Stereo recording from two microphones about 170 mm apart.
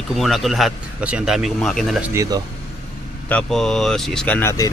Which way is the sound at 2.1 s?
20° right (ahead or behind).